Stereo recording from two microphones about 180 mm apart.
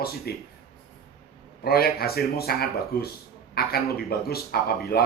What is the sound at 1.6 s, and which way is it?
Speech, 60° left (ahead or behind).